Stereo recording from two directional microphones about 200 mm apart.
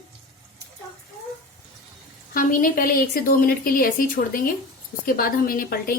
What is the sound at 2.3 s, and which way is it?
Speech, 45° left (ahead or behind).